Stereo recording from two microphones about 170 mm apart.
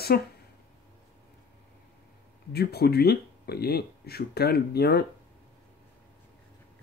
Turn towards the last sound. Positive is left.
turn(degrees=70)  # may be behind; listen again after turning